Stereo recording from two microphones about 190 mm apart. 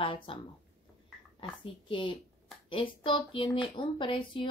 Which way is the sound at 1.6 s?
25° left (ahead or behind).